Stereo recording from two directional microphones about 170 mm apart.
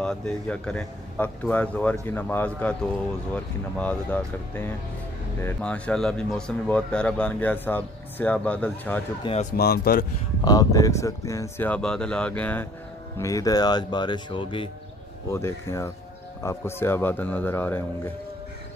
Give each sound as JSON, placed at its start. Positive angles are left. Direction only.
{"t": 0.0, "sound": "speech", "side_deg": 5}
{"t": 3.7, "sound": "speech", "side_deg": 10}
{"t": 9.2, "sound": "speech", "side_deg": 40}
{"t": 9.6, "sound": "speech", "side_deg": 65}
{"t": 10.4, "sound": "speech", "side_deg": 20}
{"t": 13.2, "sound": "speech", "side_deg": 20}
{"t": 15.3, "sound": "speech", "side_deg": 15}